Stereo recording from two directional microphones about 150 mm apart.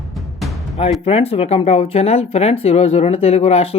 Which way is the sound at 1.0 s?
40° left (ahead or behind).